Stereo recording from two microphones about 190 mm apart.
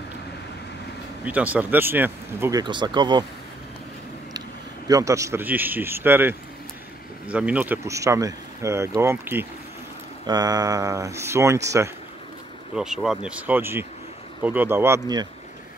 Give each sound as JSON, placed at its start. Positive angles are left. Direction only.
{"t": 1.2, "sound": "speech", "side_deg": -10}
{"t": 2.6, "sound": "speech", "side_deg": -25}
{"t": 4.8, "sound": "speech", "side_deg": -15}
{"t": 12.7, "sound": "speech", "side_deg": -5}